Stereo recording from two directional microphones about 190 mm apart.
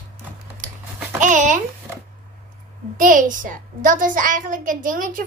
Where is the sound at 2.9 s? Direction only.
45° right (ahead or behind).